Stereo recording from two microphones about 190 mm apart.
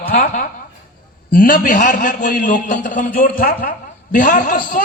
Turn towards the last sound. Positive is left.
turn(degrees=45)  # may be behind; listen again after turning